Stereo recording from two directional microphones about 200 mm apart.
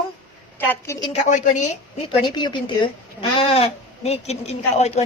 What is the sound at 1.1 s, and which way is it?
Speech, 40° left (ahead or behind).